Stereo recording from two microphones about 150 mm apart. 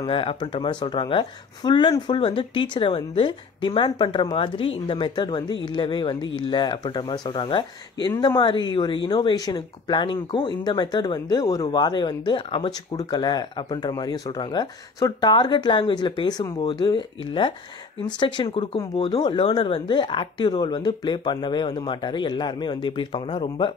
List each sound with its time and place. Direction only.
0.0 s speech: 35° left (ahead or behind)